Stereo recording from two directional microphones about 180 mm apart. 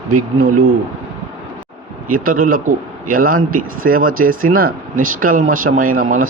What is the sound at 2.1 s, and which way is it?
Speech, 50° right (ahead or behind).